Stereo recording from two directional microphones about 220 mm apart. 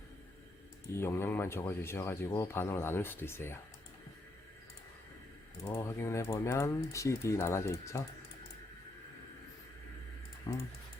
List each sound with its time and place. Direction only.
0.9 s speech: 10° left (ahead or behind)
5.6 s speech: 15° left (ahead or behind)
10.5 s speech: 20° left (ahead or behind)